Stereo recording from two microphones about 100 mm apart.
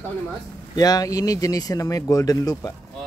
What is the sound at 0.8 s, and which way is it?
Speech, 40° left (ahead or behind).